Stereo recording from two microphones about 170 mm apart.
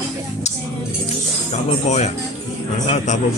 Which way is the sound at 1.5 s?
40° left (ahead or behind).